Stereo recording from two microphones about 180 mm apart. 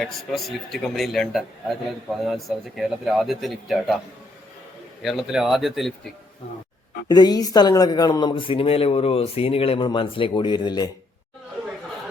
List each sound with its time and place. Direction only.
0.0 s speech: centre (ahead or behind)
5.0 s speech: centre (ahead or behind)
7.1 s speech: 20° left (ahead or behind)